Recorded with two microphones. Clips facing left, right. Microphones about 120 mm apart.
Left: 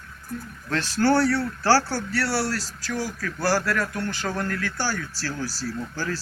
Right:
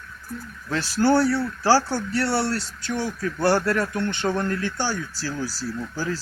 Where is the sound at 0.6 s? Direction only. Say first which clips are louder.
Right 1 dB; 10° right (ahead or behind).